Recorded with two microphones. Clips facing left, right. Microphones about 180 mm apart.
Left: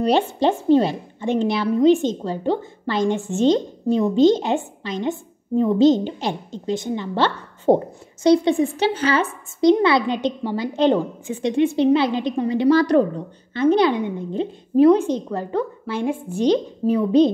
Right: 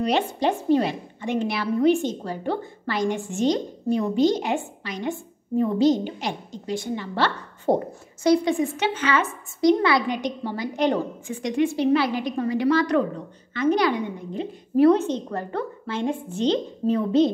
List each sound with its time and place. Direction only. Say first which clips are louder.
0.0 s a woman's voice: left 4 dB; 30° left (ahead or behind)
12.7 s a woman's voice: left 5 dB; 35° left (ahead or behind)
14.9 s a woman's voice: left 3 dB; 10° left (ahead or behind)